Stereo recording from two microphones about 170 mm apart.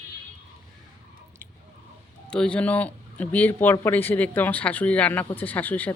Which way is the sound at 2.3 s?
5° left (ahead or behind).